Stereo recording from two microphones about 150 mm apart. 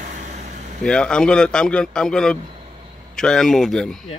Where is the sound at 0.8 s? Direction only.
5° left (ahead or behind).